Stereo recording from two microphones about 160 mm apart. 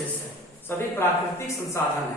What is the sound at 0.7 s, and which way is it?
A man's voice, 15° left (ahead or behind).